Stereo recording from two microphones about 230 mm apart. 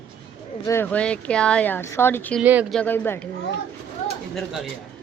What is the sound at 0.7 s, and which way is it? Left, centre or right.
Speech, centre.